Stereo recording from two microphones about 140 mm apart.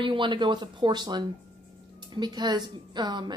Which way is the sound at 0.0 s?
35° right (ahead or behind).